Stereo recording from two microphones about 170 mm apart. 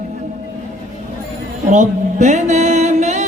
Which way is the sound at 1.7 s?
45° right (ahead or behind).